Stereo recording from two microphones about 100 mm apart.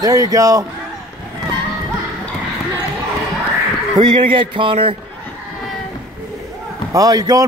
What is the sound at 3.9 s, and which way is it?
A man's voice, 55° right (ahead or behind).